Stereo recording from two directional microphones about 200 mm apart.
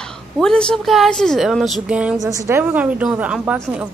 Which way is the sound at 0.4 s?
5° left (ahead or behind).